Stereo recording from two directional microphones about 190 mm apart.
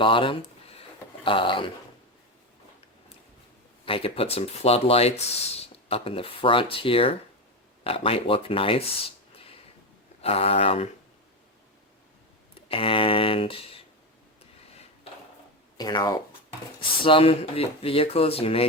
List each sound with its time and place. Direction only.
0.0 s speech: 25° left (ahead or behind)
0.8 s a sound: 25° left (ahead or behind)
3.8 s speech: 30° left (ahead or behind)
10.2 s speech: 30° left (ahead or behind)
12.6 s speech: 30° left (ahead or behind)
15.8 s speech: 20° left (ahead or behind)